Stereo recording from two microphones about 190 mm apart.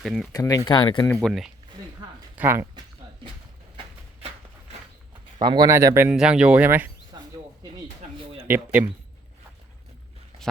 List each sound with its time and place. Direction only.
0.0 s speech: centre (ahead or behind)
0.3 s speech: 20° left (ahead or behind)
1.1 s speech: centre (ahead or behind)
2.4 s speech: 10° right (ahead or behind)
5.5 s speech: 20° right (ahead or behind)
7.1 s a sound: 20° right (ahead or behind)
8.4 s speech: 10° right (ahead or behind)